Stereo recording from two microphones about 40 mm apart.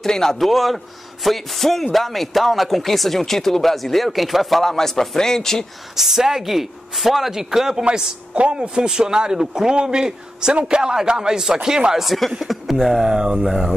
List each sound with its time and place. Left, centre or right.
0.0 s a man's voice: centre
0.4 s speech: centre
5.9 s speech: centre
8.4 s a man's voice: right
12.0 s speech: centre
13.1 s a man's voice: right
13.5 s speech: centre